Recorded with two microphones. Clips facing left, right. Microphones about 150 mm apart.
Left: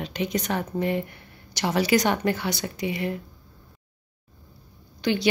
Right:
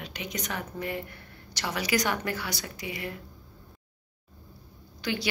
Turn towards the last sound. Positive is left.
turn(degrees=25)  # may be behind; listen again after turning